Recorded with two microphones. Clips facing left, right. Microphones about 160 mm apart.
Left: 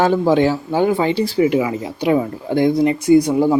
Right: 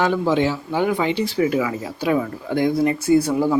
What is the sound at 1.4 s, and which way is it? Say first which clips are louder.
Speech: left 4 dB; 25° left (ahead or behind).